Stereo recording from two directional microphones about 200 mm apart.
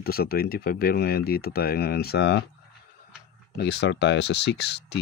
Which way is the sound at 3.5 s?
60° left (ahead or behind).